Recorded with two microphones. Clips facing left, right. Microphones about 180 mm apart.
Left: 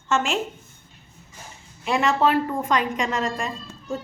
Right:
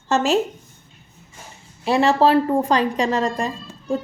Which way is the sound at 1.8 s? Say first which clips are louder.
Right 5 dB; 35° right (ahead or behind).